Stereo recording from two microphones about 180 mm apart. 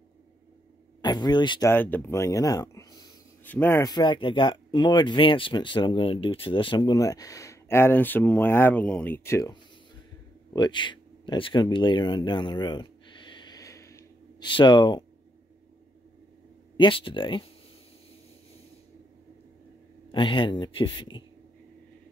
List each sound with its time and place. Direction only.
1.0 s speech: 25° left (ahead or behind)
1.7 s speech: 10° left (ahead or behind)
10.5 s a sound: 25° left (ahead or behind)
14.5 s speech: 25° left (ahead or behind)
16.7 s speech: 30° left (ahead or behind)
20.1 s speech: 30° left (ahead or behind)